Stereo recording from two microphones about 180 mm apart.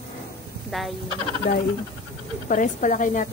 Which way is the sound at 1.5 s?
50° left (ahead or behind).